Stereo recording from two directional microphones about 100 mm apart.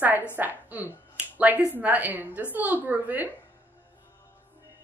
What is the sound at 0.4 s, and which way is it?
A woman's voice, 15° right (ahead or behind).